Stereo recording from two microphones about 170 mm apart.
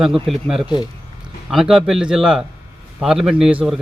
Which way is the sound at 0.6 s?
25° left (ahead or behind).